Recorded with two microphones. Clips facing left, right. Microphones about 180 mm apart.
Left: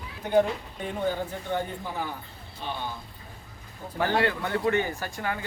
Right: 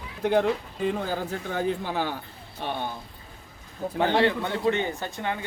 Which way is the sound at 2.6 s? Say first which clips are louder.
Right 4 dB; 60° right (ahead or behind).